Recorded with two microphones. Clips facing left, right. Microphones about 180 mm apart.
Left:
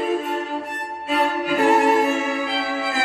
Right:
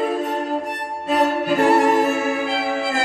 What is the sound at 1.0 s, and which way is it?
Music, 45° right (ahead or behind).